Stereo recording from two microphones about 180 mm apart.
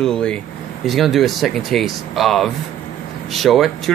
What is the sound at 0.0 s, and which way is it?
Speech, 5° left (ahead or behind).